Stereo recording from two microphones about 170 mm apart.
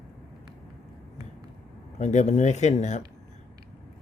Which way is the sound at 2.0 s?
40° left (ahead or behind).